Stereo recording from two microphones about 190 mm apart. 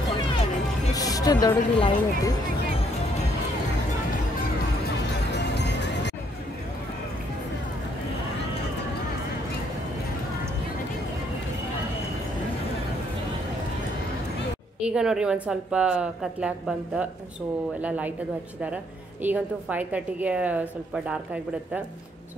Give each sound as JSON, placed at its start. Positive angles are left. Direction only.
{"t": 0.9, "sound": "speech", "side_deg": 20}
{"t": 5.3, "sound": "music", "side_deg": 65}
{"t": 14.8, "sound": "a woman's voice", "side_deg": -5}
{"t": 19.2, "sound": "a woman's voice", "side_deg": -10}